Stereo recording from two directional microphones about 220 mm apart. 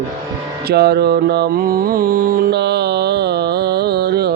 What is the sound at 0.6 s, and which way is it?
Mantra, 50° right (ahead or behind).